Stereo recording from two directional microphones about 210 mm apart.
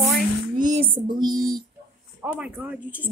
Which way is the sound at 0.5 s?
35° right (ahead or behind).